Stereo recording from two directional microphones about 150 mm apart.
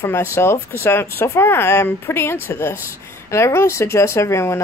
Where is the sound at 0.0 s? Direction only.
15° left (ahead or behind).